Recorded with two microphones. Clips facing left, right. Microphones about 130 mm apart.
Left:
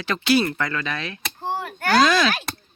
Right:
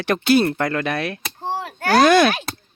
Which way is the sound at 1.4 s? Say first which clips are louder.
Right 1 dB; 30° right (ahead or behind).